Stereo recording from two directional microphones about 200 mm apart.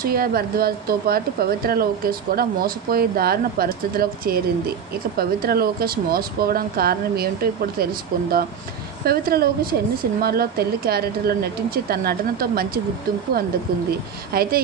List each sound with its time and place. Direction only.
0.0 s speech: 45° right (ahead or behind)
14.3 s speech: 50° right (ahead or behind)